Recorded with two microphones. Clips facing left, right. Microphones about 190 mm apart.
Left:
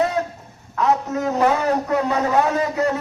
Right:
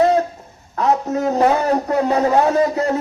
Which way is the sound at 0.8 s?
35° right (ahead or behind).